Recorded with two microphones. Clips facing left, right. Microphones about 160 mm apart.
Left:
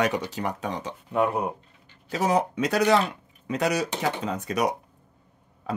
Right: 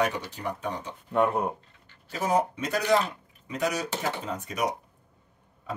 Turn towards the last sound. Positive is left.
turn(degrees=75)  # may be behind; listen again after turning